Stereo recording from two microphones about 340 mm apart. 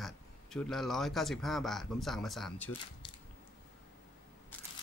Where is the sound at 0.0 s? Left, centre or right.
Centre.